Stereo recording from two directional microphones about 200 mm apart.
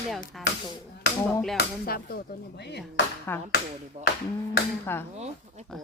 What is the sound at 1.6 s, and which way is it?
Speech, 50° left (ahead or behind).